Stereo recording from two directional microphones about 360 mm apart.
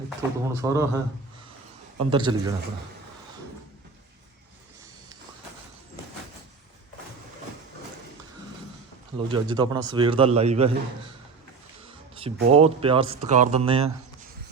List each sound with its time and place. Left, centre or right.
0.2 s speech: centre
2.0 s speech: centre
9.1 s speech: centre
12.5 s speech: centre